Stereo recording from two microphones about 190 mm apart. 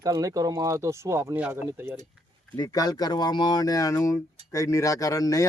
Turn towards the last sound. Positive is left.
turn(degrees=20)  # may be behind; listen again after turning